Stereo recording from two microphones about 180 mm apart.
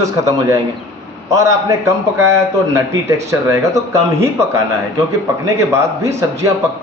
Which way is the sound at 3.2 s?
15° right (ahead or behind).